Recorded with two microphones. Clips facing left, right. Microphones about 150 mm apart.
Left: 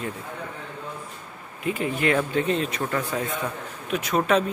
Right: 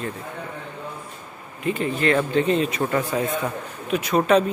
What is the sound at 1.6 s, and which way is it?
A man's voice, 10° left (ahead or behind).